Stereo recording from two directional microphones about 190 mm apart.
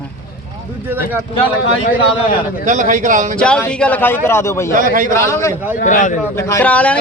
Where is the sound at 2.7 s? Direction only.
40° right (ahead or behind).